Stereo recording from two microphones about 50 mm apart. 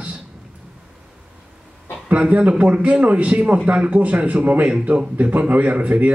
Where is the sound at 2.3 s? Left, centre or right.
Right.